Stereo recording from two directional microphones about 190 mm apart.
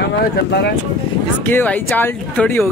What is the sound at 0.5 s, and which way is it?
Speech, 60° left (ahead or behind).